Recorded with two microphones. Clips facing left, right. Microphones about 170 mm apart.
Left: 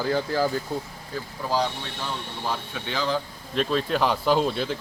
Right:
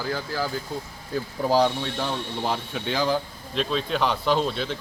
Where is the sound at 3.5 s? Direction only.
5° left (ahead or behind).